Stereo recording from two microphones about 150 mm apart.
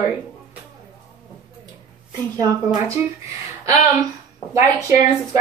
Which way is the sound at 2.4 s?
25° right (ahead or behind).